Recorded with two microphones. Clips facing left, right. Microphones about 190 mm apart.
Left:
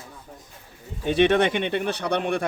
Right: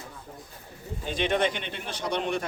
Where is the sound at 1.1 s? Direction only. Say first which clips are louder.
Left 7 dB; 70° left (ahead or behind).